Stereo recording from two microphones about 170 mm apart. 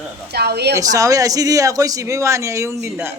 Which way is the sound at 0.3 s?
70° right (ahead or behind).